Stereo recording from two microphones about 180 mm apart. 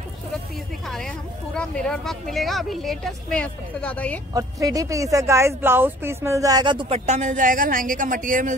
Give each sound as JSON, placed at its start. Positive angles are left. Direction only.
{"t": 0.8, "sound": "speech", "side_deg": 5}
{"t": 4.3, "sound": "speech", "side_deg": -20}
{"t": 7.1, "sound": "speech", "side_deg": -45}